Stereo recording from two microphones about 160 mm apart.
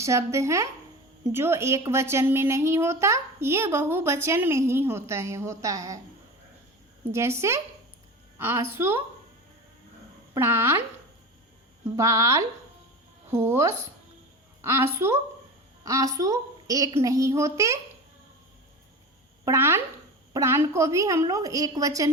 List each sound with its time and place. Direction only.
0.0 s a woman's voice: 20° right (ahead or behind)
7.1 s a woman's voice: 15° right (ahead or behind)
10.3 s a woman's voice: 15° right (ahead or behind)
11.9 s a woman's voice: 20° right (ahead or behind)
19.5 s a woman's voice: 15° right (ahead or behind)